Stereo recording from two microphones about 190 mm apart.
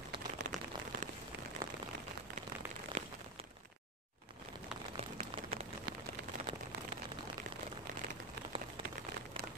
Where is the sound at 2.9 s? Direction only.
35° right (ahead or behind).